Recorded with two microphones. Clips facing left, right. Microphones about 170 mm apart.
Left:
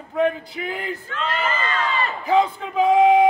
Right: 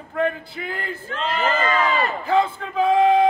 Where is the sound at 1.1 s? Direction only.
40° right (ahead or behind).